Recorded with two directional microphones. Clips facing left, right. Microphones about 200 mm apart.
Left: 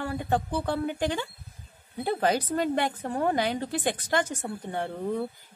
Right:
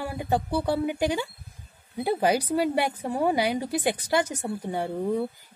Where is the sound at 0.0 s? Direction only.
10° right (ahead or behind).